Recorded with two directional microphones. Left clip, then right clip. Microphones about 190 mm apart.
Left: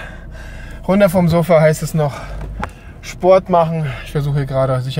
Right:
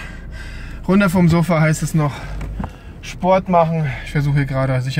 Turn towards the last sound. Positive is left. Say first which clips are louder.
# left 4 dB
turn(degrees=0)  # may be behind; listen again after turning